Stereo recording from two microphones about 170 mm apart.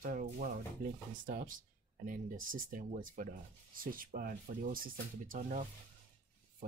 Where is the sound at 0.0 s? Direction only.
55° right (ahead or behind).